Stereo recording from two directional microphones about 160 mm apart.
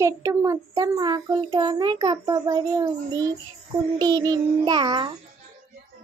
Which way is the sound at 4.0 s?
25° right (ahead or behind).